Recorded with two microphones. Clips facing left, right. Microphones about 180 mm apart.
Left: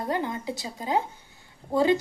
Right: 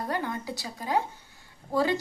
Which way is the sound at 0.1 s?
20° left (ahead or behind).